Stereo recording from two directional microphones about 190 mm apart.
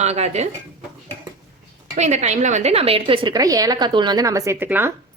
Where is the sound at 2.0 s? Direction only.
35° right (ahead or behind).